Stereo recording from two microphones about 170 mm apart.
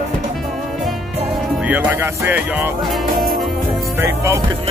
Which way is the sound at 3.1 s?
55° right (ahead or behind).